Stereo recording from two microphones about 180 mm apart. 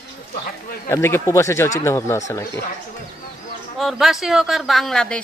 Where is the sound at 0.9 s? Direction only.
15° left (ahead or behind).